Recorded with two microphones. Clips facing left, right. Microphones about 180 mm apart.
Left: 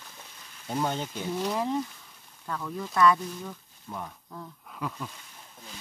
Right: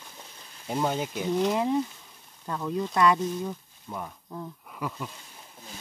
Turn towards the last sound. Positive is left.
turn(degrees=-5)  # may be behind; listen again after turning